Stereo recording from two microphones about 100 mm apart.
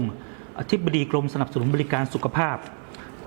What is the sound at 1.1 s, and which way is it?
A man's voice, 25° right (ahead or behind).